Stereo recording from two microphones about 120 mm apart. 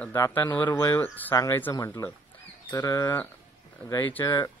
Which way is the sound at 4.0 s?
15° left (ahead or behind).